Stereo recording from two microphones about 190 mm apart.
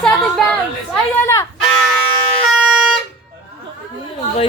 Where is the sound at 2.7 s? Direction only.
5° right (ahead or behind).